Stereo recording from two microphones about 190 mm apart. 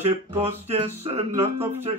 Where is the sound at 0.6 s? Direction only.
35° right (ahead or behind).